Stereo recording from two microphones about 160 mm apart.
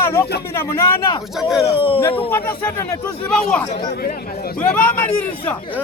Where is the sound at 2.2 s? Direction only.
15° left (ahead or behind).